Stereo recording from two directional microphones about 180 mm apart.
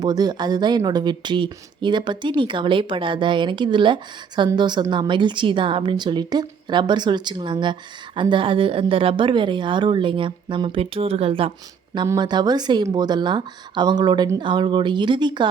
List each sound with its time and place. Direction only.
0.0 s speech: 20° right (ahead or behind)
11.9 s speech: 20° right (ahead or behind)